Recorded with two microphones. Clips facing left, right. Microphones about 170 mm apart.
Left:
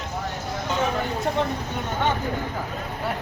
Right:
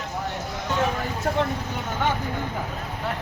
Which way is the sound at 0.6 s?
Centre (ahead or behind).